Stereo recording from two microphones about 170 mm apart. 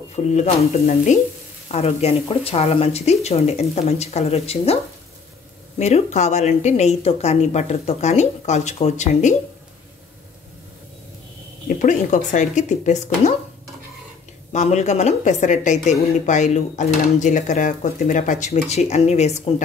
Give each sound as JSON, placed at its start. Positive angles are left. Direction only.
{"t": 0.1, "sound": "a woman's voice", "side_deg": 40}
{"t": 5.8, "sound": "a woman's voice", "side_deg": 40}
{"t": 11.8, "sound": "a woman's voice", "side_deg": 45}
{"t": 14.5, "sound": "a woman's voice", "side_deg": 45}